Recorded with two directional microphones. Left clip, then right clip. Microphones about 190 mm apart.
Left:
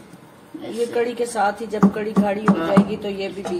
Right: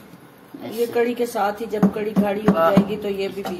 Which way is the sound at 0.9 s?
Centre (ahead or behind).